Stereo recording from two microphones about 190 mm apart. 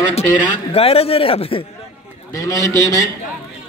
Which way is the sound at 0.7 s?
30° left (ahead or behind).